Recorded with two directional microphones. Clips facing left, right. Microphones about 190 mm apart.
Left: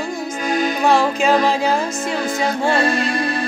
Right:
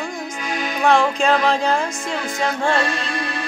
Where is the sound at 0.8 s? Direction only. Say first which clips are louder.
Right 1 dB; 5° left (ahead or behind).